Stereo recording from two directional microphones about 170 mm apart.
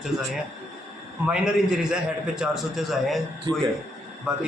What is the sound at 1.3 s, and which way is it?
A man's voice, 5° right (ahead or behind).